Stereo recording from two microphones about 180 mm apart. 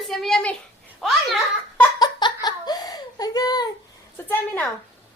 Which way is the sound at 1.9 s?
25° left (ahead or behind).